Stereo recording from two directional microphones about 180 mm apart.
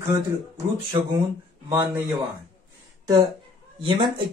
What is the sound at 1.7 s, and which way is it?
Speech, 15° right (ahead or behind).